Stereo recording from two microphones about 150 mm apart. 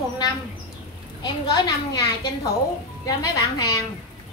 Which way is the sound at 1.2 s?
30° left (ahead or behind).